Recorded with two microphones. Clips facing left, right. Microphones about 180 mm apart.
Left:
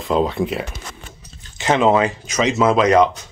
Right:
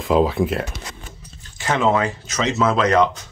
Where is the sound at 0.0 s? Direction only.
Centre (ahead or behind).